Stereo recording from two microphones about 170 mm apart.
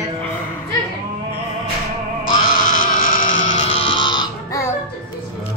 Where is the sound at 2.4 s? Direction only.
55° left (ahead or behind).